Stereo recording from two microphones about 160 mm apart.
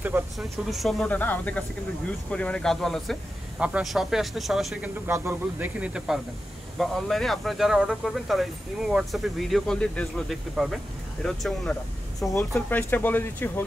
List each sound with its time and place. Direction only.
0.4 s speech: centre (ahead or behind)
5.0 s speech: 15° right (ahead or behind)
12.5 s speech: 10° left (ahead or behind)